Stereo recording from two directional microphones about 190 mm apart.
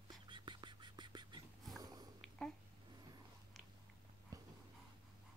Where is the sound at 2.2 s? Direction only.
Centre (ahead or behind).